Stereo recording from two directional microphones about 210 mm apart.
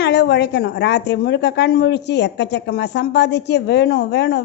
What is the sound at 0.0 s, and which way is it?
A woman's voice, 55° left (ahead or behind).